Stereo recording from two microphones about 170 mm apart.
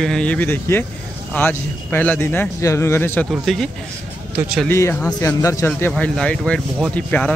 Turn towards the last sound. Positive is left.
turn(degrees=10)  # may be behind; listen again after turning